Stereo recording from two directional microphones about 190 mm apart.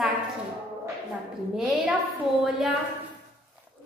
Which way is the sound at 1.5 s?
Centre (ahead or behind).